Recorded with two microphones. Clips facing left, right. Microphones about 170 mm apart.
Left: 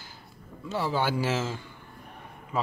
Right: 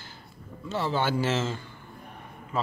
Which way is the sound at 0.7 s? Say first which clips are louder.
Even; 10° left (ahead or behind).